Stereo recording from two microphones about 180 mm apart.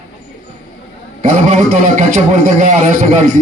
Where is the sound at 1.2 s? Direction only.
40° right (ahead or behind).